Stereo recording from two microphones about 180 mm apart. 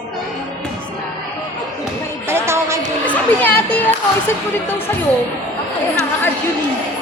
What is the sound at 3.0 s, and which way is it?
Music, 10° left (ahead or behind).